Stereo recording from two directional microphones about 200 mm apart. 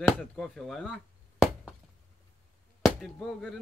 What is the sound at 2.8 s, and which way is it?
Speech, centre (ahead or behind).